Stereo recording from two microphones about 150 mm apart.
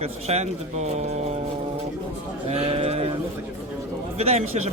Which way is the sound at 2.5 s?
40° right (ahead or behind).